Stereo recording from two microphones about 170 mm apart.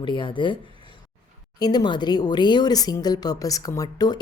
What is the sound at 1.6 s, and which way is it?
Speech, 25° left (ahead or behind).